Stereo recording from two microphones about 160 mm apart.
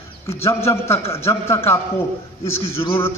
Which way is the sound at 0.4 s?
15° left (ahead or behind).